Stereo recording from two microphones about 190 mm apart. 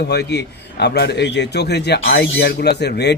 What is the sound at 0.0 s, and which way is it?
A man's voice, 60° left (ahead or behind).